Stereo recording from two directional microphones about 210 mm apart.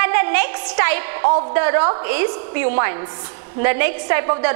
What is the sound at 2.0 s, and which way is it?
A woman's voice, 15° right (ahead or behind).